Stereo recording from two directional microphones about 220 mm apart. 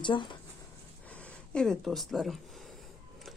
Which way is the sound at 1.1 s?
5° left (ahead or behind).